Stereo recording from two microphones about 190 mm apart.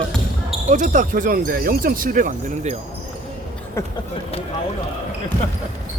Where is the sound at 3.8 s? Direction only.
15° left (ahead or behind).